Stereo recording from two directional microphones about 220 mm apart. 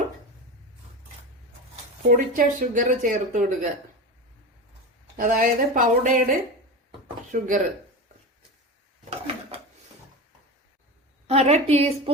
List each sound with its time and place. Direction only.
2.0 s speech: 40° right (ahead or behind)
5.1 s speech: 40° right (ahead or behind)
7.3 s speech: 40° right (ahead or behind)
9.0 s a sound: 25° right (ahead or behind)
11.3 s a woman's voice: 30° right (ahead or behind)